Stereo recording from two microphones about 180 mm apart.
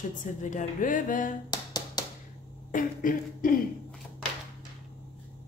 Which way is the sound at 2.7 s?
50° left (ahead or behind).